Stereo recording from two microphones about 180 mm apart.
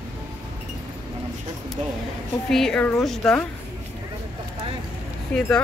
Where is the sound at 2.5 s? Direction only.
5° left (ahead or behind).